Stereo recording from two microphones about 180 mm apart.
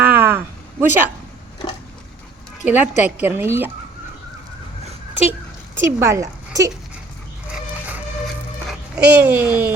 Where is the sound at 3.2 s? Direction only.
10° right (ahead or behind).